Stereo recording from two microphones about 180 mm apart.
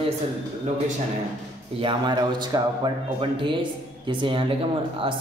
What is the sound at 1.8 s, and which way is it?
Speech, 25° right (ahead or behind).